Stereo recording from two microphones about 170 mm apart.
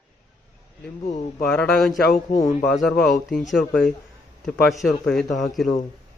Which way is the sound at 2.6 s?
Centre (ahead or behind).